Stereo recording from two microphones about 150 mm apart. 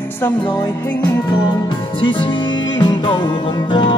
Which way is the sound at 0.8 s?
15° left (ahead or behind).